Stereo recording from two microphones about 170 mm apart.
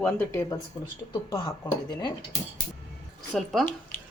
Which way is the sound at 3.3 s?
Centre (ahead or behind).